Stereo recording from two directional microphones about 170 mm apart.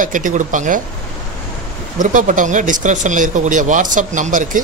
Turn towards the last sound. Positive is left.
turn(degrees=-50)  # may be behind; listen again after turning